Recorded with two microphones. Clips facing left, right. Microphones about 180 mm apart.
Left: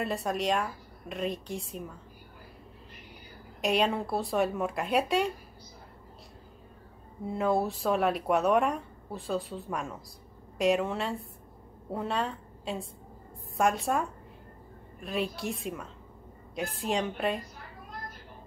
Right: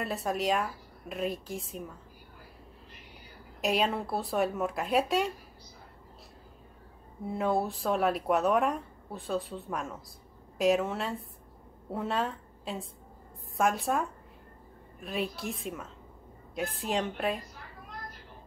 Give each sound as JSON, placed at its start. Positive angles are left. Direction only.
{"t": 0.0, "sound": "speech", "side_deg": 0}
{"t": 3.6, "sound": "speech", "side_deg": 0}
{"t": 7.2, "sound": "a woman's voice", "side_deg": 0}